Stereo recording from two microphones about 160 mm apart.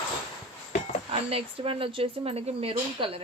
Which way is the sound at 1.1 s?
40° right (ahead or behind).